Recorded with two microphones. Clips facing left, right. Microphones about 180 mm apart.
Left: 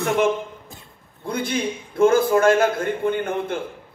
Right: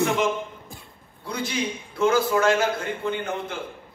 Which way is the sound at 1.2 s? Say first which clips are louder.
Left 4 dB; 55° left (ahead or behind).